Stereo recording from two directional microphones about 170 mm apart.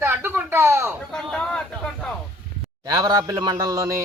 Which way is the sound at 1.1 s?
5° left (ahead or behind).